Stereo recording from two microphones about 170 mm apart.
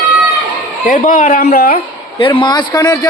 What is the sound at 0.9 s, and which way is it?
Speech, 50° left (ahead or behind).